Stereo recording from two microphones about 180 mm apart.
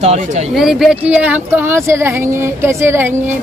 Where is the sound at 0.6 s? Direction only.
5° right (ahead or behind).